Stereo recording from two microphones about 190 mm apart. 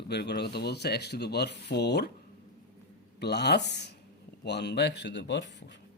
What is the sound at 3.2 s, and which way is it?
A man's voice, 60° left (ahead or behind).